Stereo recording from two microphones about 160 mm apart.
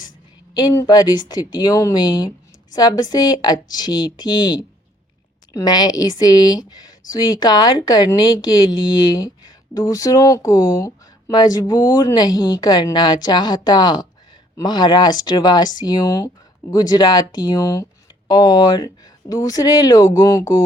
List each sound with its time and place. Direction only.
0.5 s speech: 20° left (ahead or behind)